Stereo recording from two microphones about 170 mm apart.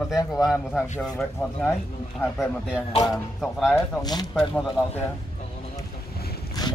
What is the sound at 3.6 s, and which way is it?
Speech, 20° left (ahead or behind).